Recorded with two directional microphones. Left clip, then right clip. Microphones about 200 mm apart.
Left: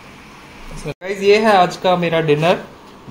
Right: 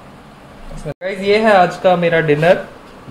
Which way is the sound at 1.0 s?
10° left (ahead or behind).